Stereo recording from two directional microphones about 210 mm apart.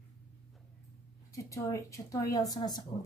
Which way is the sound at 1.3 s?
15° left (ahead or behind).